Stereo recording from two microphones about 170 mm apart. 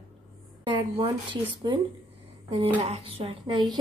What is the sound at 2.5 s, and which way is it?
A woman's voice, 30° right (ahead or behind).